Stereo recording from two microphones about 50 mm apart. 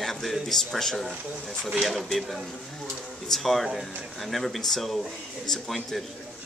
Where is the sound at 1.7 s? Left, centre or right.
Centre.